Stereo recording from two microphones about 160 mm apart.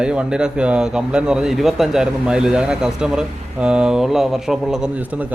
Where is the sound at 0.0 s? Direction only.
5° right (ahead or behind).